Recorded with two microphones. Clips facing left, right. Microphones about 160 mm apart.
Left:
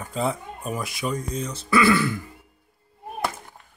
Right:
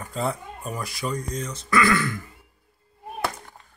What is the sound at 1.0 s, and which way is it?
Speech, 5° left (ahead or behind).